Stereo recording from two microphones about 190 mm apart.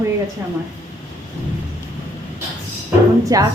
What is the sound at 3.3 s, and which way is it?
Speech, 15° right (ahead or behind).